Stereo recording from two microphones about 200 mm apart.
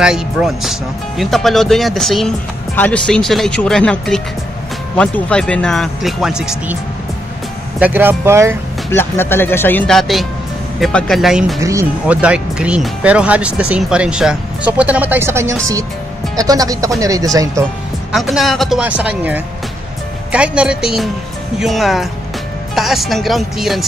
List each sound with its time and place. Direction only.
0.0 s speech: 5° right (ahead or behind)
7.8 s speech: 10° right (ahead or behind)
8.9 s speech: 10° left (ahead or behind)
11.6 s speech: 15° right (ahead or behind)
18.1 s speech: centre (ahead or behind)